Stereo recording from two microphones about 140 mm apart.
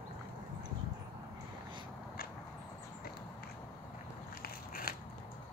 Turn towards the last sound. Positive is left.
turn(degrees=90)